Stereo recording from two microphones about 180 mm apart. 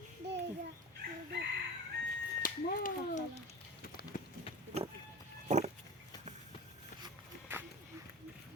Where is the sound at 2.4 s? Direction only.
50° left (ahead or behind).